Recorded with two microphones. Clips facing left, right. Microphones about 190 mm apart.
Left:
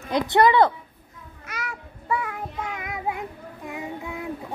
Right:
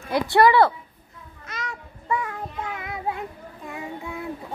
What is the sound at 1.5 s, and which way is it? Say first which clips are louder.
Child singing: even; 5° left (ahead or behind).